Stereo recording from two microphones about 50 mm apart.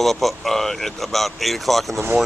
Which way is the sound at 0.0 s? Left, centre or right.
Centre.